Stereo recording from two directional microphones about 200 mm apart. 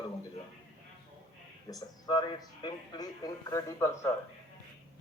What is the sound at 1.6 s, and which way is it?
A man's voice, 20° left (ahead or behind).